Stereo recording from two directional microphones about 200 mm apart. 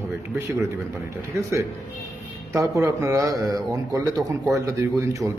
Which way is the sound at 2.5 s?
15° right (ahead or behind).